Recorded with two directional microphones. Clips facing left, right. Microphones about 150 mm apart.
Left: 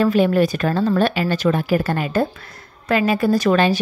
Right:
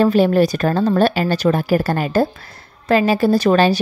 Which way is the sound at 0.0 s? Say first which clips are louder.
Right 2 dB; 35° right (ahead or behind).